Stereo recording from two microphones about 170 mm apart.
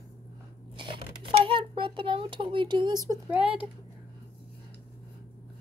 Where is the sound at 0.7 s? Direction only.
30° right (ahead or behind).